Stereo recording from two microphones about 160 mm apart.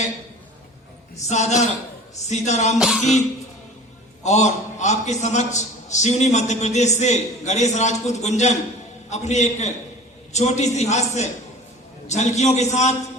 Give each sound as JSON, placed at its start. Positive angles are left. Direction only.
{"t": 1.3, "sound": "a man's voice", "side_deg": 45}
{"t": 2.7, "sound": "music", "side_deg": -5}
{"t": 4.2, "sound": "a man's voice", "side_deg": 45}